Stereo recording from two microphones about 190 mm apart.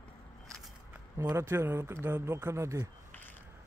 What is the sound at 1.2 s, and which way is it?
Speech, 15° right (ahead or behind).